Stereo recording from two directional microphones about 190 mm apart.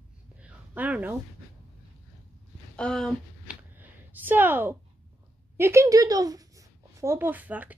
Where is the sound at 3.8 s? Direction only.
10° right (ahead or behind).